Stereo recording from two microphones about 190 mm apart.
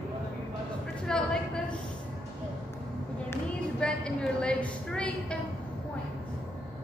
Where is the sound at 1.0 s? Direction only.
5° left (ahead or behind).